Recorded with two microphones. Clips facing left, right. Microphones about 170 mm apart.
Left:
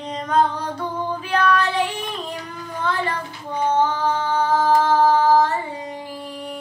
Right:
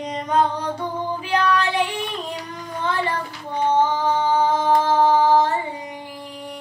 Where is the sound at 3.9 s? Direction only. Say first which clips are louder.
Right 2 dB; 15° right (ahead or behind).